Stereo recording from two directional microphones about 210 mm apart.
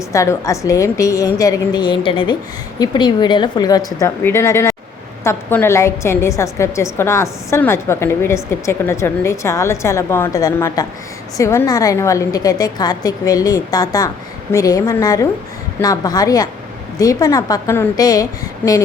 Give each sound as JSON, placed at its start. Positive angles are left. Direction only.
{"t": 0.1, "sound": "a woman's voice", "side_deg": 15}